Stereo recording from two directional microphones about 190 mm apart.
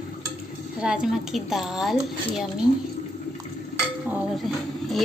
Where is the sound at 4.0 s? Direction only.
5° right (ahead or behind).